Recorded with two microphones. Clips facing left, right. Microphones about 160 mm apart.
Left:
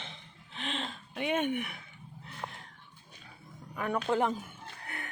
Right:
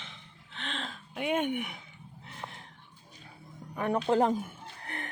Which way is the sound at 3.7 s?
30° right (ahead or behind).